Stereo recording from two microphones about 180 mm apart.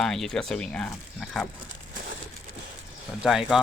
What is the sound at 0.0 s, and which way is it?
Speech, 5° left (ahead or behind).